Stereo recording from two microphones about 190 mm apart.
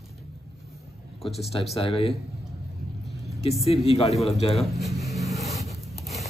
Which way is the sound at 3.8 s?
35° left (ahead or behind).